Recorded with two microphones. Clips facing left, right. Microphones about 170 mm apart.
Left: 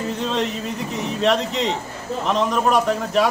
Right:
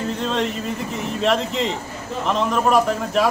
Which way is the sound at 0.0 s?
Centre (ahead or behind).